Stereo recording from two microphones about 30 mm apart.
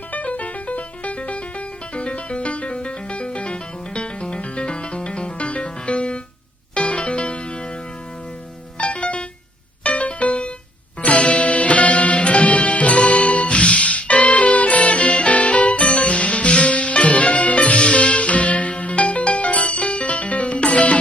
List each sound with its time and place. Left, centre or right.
0.1 s music: left
8.8 s music: left